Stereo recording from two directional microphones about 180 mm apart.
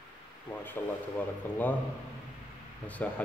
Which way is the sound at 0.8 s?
10° left (ahead or behind).